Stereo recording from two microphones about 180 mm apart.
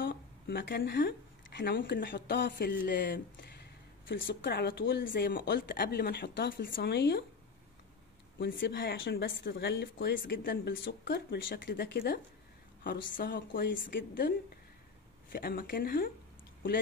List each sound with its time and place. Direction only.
0.0 s speech: 70° left (ahead or behind)
2.4 s speech: 55° left (ahead or behind)
8.4 s speech: 70° left (ahead or behind)
15.3 s speech: 55° left (ahead or behind)